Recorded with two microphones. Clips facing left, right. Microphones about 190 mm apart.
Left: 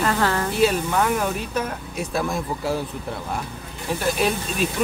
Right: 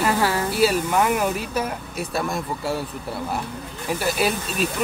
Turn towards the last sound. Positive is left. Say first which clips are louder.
# even
turn(degrees=-5)  # may be behind; listen again after turning